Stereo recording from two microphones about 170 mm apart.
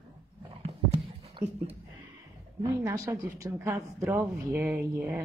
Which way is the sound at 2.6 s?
20° right (ahead or behind).